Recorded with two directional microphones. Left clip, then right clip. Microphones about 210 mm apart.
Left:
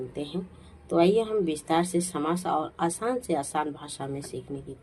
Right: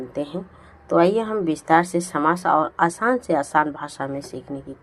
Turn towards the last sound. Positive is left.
turn(degrees=-20)  # may be behind; listen again after turning